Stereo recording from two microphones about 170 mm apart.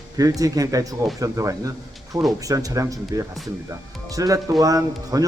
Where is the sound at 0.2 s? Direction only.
20° right (ahead or behind).